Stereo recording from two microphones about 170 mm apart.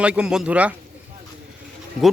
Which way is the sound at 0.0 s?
5° right (ahead or behind).